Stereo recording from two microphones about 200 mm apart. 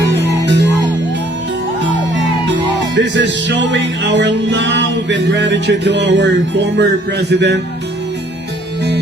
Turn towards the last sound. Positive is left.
turn(degrees=-60)  # may be behind; listen again after turning